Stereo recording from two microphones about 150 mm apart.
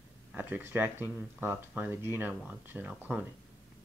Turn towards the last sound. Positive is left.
turn(degrees=-10)  # may be behind; listen again after turning